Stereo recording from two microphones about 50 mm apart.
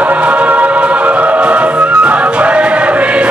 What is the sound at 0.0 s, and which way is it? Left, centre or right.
Music, right.